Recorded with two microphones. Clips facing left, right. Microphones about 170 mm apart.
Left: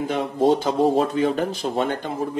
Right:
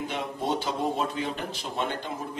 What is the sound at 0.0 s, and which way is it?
Speech, 45° left (ahead or behind).